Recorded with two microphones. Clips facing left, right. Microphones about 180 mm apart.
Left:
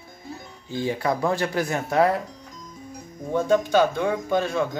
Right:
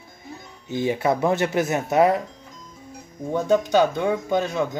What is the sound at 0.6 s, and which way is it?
Speech, 20° right (ahead or behind).